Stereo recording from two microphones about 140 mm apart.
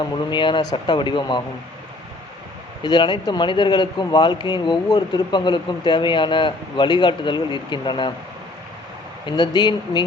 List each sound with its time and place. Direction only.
0.0 s speech: 35° left (ahead or behind)
2.8 s speech: 35° left (ahead or behind)
9.2 s speech: 35° left (ahead or behind)